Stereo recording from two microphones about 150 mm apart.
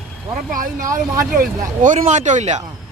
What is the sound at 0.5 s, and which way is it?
Speech, 60° right (ahead or behind).